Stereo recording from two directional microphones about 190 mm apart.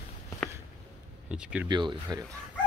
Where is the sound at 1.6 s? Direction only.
25° right (ahead or behind).